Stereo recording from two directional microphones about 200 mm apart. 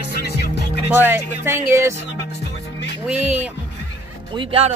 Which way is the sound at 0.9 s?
10° right (ahead or behind).